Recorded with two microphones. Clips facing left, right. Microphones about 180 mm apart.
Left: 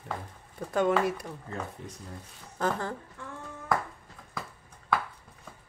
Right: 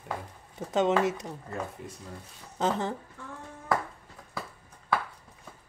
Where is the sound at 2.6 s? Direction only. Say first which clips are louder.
Right 1 dB; 20° right (ahead or behind).